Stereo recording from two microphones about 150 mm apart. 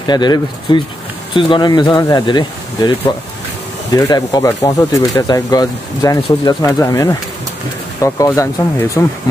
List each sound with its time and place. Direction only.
0.0 s speech: 30° left (ahead or behind)
3.9 s speech: 25° left (ahead or behind)